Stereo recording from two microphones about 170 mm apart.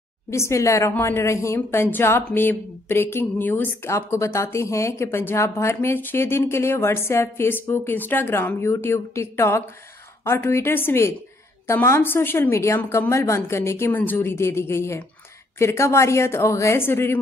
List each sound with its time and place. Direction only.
0.3 s a woman's voice: 15° left (ahead or behind)